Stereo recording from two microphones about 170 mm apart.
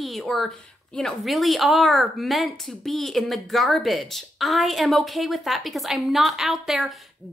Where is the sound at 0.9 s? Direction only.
Centre (ahead or behind).